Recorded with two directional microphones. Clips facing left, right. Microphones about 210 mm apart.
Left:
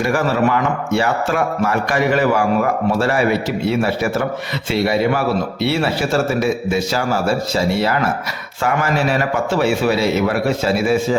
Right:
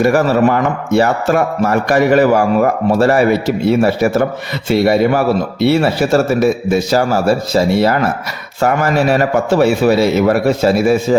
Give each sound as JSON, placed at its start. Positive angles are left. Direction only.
{"t": 0.0, "sound": "a man's voice", "side_deg": -40}
{"t": 9.5, "sound": "a man's voice", "side_deg": -40}